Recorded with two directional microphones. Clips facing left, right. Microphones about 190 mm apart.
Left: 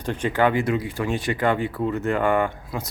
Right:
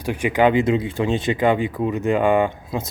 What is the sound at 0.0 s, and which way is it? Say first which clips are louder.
Speech: right 3 dB; 10° right (ahead or behind).